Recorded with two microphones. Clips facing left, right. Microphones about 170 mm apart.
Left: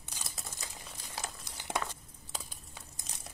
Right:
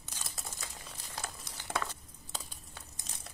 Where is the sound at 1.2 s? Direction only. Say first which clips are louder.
Even; 15° left (ahead or behind).